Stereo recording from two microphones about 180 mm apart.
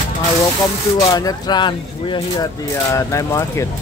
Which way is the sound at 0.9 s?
20° left (ahead or behind).